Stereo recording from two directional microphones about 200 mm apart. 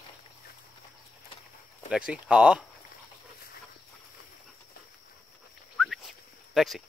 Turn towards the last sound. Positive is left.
turn(degrees=0)  # may be behind; listen again after turning